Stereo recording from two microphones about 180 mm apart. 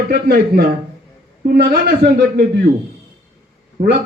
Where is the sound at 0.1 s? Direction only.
60° right (ahead or behind).